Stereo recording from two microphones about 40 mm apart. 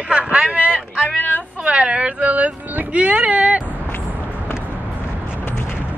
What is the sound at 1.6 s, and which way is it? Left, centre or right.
Speech, right.